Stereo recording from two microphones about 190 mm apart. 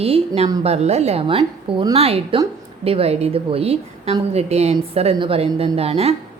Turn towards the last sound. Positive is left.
turn(degrees=-30)  # may be behind; listen again after turning